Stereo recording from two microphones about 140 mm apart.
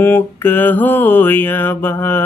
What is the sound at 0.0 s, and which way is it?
Mantra, 15° left (ahead or behind).